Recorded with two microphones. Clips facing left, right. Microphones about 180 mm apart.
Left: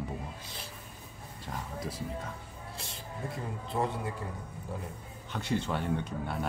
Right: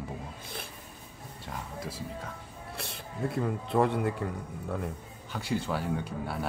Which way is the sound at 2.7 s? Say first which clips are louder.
Right 6 dB; 65° right (ahead or behind).